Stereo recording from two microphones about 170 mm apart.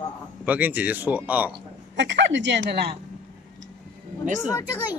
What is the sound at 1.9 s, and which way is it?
Speech, 90° right.